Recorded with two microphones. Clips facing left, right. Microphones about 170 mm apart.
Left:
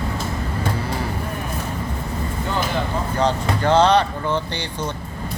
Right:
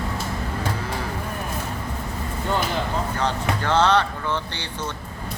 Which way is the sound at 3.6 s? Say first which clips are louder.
Left 4 dB; 15° left (ahead or behind).